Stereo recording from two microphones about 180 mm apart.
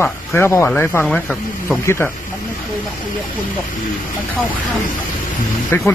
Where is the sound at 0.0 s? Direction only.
15° left (ahead or behind).